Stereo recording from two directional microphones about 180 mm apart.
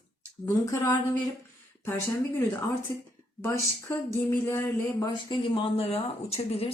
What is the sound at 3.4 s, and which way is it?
Speech, 15° left (ahead or behind).